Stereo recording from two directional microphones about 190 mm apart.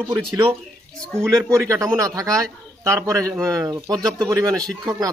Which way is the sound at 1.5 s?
15° right (ahead or behind).